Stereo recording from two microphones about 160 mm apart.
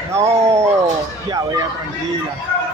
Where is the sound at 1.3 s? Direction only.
25° right (ahead or behind).